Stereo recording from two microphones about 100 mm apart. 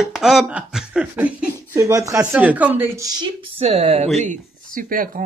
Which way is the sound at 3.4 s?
85° right.